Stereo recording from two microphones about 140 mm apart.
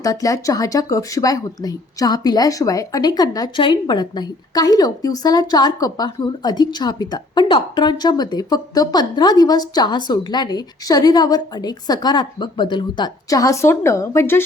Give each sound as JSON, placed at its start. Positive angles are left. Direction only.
{"t": 0.0, "sound": "speech", "side_deg": 25}